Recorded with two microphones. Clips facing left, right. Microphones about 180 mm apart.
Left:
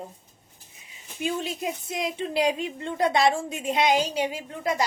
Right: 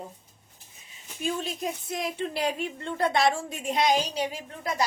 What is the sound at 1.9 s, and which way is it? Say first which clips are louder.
A woman's voice: left 3 dB; 20° left (ahead or behind).